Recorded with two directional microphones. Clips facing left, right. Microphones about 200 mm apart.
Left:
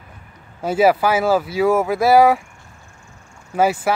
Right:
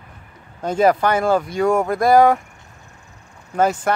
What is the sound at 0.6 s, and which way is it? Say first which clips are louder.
Speech: left 1 dB; 5° left (ahead or behind).